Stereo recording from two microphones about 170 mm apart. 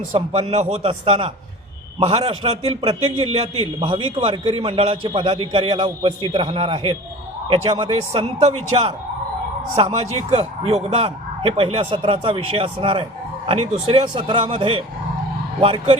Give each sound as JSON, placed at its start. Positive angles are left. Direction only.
{"t": 0.1, "sound": "a man's voice", "side_deg": -35}